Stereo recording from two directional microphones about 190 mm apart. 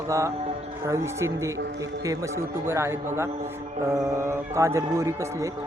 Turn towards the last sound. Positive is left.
turn(degrees=-15)  # may be behind; listen again after turning